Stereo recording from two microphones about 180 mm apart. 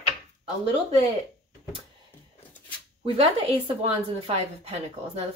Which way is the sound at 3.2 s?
35° right (ahead or behind).